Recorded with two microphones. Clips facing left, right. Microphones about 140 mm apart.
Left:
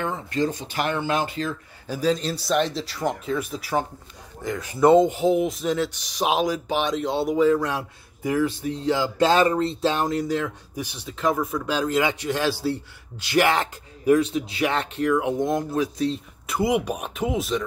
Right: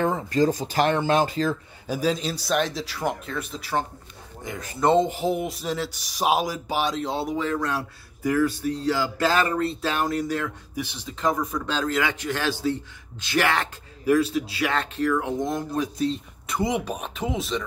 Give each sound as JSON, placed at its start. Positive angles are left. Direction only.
{"t": 0.0, "sound": "speech", "side_deg": -40}
{"t": 1.9, "sound": "speech", "side_deg": -10}
{"t": 7.6, "sound": "speech", "side_deg": 15}
{"t": 11.1, "sound": "speech", "side_deg": 5}
{"t": 15.7, "sound": "speech", "side_deg": 0}